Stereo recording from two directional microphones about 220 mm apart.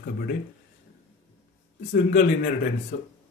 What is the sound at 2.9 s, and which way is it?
Speech, 40° left (ahead or behind).